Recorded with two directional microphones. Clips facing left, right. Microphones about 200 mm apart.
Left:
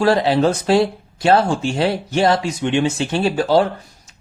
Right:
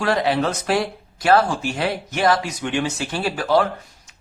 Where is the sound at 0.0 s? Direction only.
30° left (ahead or behind).